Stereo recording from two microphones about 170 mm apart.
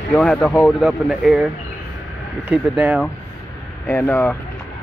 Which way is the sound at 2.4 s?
10° right (ahead or behind).